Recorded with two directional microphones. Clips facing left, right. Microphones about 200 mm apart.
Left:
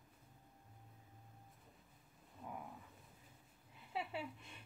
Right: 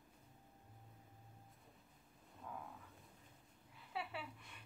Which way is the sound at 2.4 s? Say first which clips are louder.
Left 2 dB; 5° left (ahead or behind).